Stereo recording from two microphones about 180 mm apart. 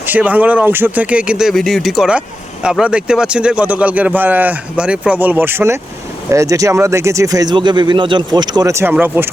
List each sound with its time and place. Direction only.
0.0 s a man's voice: 10° right (ahead or behind)